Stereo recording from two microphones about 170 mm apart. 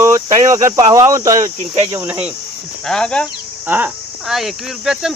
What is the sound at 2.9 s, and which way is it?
Speech, 5° left (ahead or behind).